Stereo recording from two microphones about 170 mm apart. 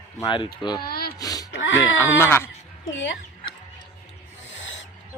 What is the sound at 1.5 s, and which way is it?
Speech, 90° left.